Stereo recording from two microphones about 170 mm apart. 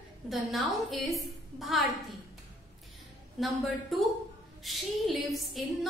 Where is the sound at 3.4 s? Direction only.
Centre (ahead or behind).